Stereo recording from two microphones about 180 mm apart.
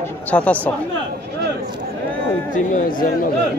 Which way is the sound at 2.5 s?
45° left (ahead or behind).